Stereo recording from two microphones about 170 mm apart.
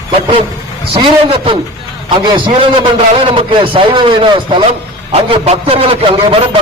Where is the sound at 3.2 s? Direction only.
30° right (ahead or behind).